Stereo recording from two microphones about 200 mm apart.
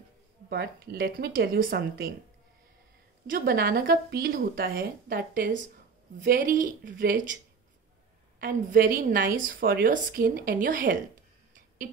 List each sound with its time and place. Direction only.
0.5 s a woman's voice: 50° right (ahead or behind)
3.3 s a woman's voice: 45° right (ahead or behind)
8.4 s a woman's voice: 45° right (ahead or behind)